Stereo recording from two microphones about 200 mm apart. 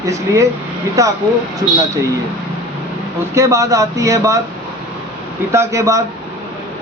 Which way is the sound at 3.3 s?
15° right (ahead or behind).